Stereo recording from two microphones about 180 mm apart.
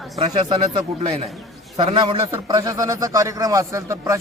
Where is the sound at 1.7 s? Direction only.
25° right (ahead or behind).